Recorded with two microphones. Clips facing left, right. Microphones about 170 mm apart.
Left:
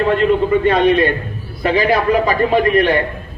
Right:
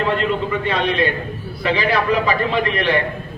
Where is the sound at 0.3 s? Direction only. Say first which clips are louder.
Left 7 dB; 45° left (ahead or behind).